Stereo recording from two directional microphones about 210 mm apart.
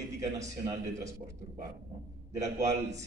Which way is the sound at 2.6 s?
15° right (ahead or behind).